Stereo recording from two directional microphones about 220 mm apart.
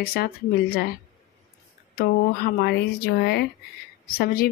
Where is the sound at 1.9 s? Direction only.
45° left (ahead or behind).